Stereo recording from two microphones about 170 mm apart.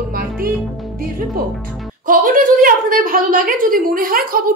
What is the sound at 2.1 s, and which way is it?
A woman's voice, 50° right (ahead or behind).